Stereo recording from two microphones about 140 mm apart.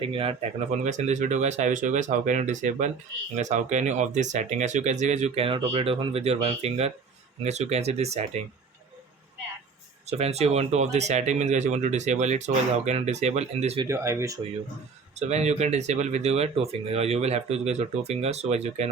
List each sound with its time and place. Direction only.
0.0 s speech: 40° right (ahead or behind)
0.9 s speech: 60° right (ahead or behind)
10.1 s speech: 50° right (ahead or behind)
13.8 s speech: 20° right (ahead or behind)
15.3 s speech: 50° right (ahead or behind)